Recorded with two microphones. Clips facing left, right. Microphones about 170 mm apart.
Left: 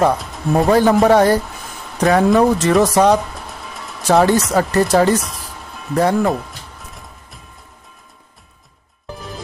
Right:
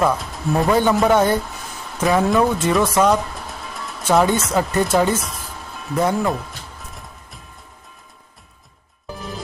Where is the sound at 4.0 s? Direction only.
40° left (ahead or behind).